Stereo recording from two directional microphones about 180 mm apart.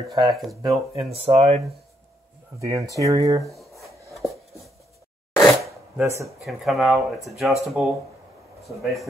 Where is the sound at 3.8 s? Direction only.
Centre (ahead or behind).